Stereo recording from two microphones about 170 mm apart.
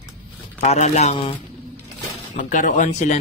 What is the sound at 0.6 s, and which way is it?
Speech, 40° left (ahead or behind).